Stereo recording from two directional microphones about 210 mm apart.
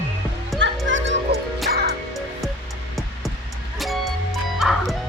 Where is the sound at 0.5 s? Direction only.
Centre (ahead or behind).